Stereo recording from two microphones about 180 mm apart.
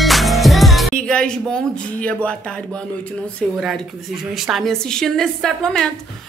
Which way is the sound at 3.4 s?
Centre (ahead or behind).